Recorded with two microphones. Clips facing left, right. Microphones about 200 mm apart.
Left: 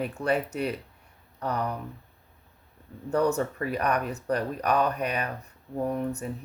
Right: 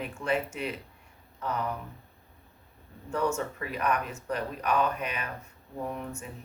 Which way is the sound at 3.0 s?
35° left (ahead or behind).